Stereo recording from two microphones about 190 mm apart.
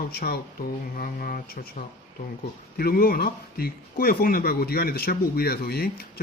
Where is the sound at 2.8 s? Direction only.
50° left (ahead or behind).